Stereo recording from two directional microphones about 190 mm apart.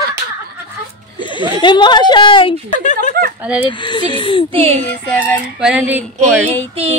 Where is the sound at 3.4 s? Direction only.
5° right (ahead or behind).